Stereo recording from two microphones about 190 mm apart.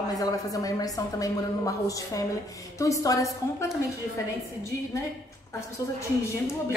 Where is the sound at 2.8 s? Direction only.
15° left (ahead or behind).